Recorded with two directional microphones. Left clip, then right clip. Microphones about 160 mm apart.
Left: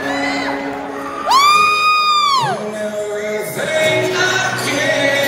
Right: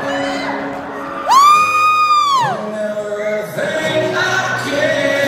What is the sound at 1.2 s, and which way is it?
Music, 20° right (ahead or behind).